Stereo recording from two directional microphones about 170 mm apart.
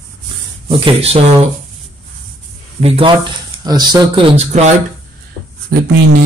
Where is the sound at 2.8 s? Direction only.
30° right (ahead or behind).